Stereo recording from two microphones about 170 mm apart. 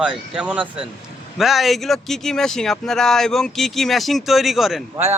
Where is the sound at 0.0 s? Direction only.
5° right (ahead or behind).